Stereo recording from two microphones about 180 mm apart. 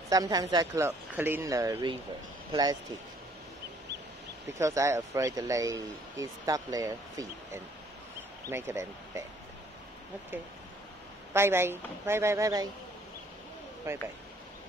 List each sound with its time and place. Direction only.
0.1 s speech: 20° right (ahead or behind)
4.6 s speech: 15° right (ahead or behind)
11.3 s speech: 15° right (ahead or behind)
13.9 s speech: 15° right (ahead or behind)